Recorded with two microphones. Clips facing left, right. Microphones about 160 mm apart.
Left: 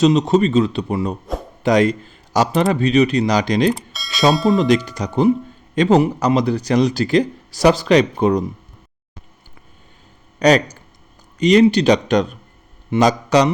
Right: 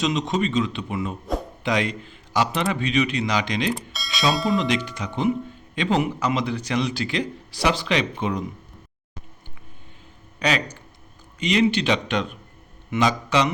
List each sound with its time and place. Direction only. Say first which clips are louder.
0.0 s a man's voice: left 9 dB; 40° left (ahead or behind)
3.9 s bell: even; centre (ahead or behind)
4.5 s speech: left 7 dB; 40° left (ahead or behind)
10.4 s a man's voice: left 10 dB; 40° left (ahead or behind)